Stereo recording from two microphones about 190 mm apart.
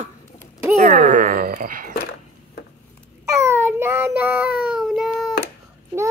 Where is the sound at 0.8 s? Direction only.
40° right (ahead or behind).